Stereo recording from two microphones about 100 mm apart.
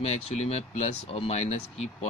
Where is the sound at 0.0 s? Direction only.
90° left.